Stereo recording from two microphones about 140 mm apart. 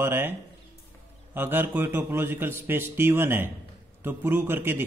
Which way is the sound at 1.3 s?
15° right (ahead or behind).